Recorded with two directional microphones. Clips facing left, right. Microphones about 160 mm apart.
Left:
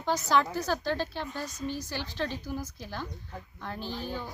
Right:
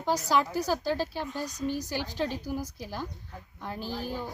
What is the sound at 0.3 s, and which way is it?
Speech, 10° right (ahead or behind).